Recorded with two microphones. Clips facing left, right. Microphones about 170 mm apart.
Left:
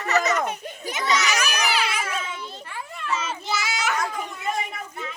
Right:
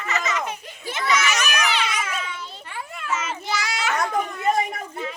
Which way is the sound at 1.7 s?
5° left (ahead or behind).